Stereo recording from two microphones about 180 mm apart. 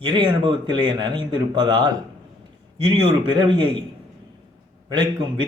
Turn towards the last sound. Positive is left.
turn(degrees=-25)  # may be behind; listen again after turning